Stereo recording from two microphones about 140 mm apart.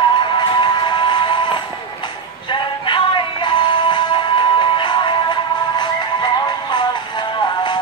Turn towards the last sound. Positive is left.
turn(degrees=35)  # may be behind; listen again after turning